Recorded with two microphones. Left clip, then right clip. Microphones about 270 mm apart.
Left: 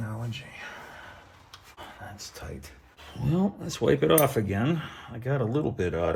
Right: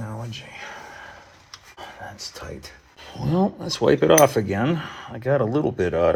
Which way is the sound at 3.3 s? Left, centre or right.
Right.